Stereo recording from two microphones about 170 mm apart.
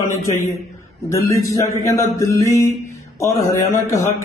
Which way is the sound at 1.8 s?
15° left (ahead or behind).